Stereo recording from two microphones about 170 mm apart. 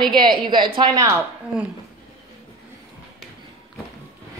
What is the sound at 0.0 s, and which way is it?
A woman's voice, 25° right (ahead or behind).